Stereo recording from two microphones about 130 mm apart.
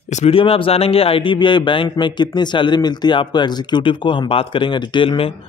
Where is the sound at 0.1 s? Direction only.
50° left (ahead or behind).